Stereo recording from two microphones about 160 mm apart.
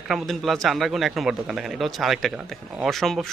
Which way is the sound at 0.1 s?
Centre (ahead or behind).